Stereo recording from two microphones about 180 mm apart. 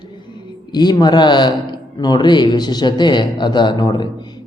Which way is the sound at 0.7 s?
25° left (ahead or behind).